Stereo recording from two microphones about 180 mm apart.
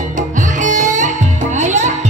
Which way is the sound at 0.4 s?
45° right (ahead or behind).